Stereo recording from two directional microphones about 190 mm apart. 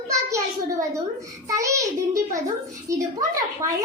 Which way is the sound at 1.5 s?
15° right (ahead or behind).